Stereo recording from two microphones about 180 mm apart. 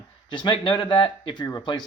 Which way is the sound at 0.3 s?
25° left (ahead or behind).